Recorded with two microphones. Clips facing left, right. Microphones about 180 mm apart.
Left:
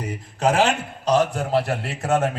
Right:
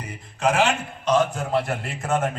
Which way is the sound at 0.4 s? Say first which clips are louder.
Left 2 dB; 35° left (ahead or behind).